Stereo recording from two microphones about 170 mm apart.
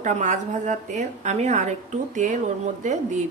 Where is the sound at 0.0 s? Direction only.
45° right (ahead or behind).